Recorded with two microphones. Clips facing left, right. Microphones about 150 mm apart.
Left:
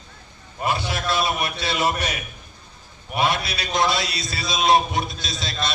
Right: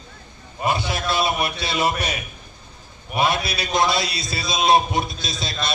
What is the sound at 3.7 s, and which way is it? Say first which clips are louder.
A man's voice: right 1 dB; 10° right (ahead or behind).